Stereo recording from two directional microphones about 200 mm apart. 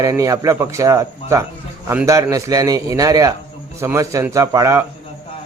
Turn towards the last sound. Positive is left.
turn(degrees=-15)  # may be behind; listen again after turning